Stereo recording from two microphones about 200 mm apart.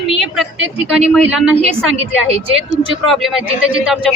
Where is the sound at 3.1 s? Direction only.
Centre (ahead or behind).